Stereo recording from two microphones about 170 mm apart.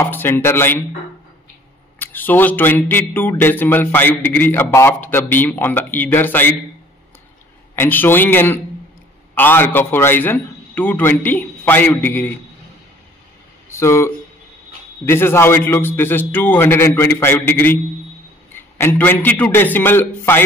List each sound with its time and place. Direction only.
0.1 s speech: 10° left (ahead or behind)
2.0 s speech: 10° left (ahead or behind)
7.7 s speech: 15° left (ahead or behind)
13.7 s speech: 15° left (ahead or behind)